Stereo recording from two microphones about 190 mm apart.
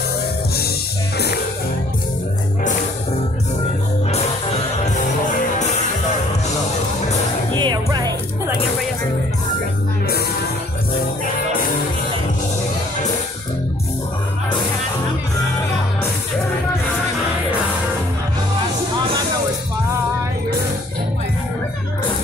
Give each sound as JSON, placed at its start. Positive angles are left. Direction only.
{"t": 1.1, "sound": "music", "side_deg": 60}
{"t": 4.1, "sound": "music", "side_deg": 35}
{"t": 7.5, "sound": "music", "side_deg": -20}